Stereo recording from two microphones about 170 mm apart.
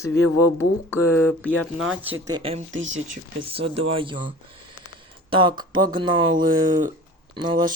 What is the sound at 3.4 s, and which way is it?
Speech, 35° right (ahead or behind).